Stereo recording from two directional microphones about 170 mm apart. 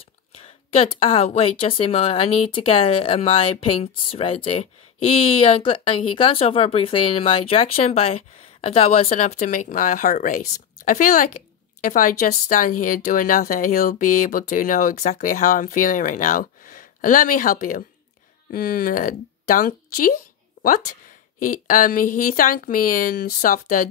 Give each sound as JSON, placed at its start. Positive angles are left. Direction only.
{"t": 0.9, "sound": "a woman's voice", "side_deg": 30}
{"t": 21.4, "sound": "speech", "side_deg": 55}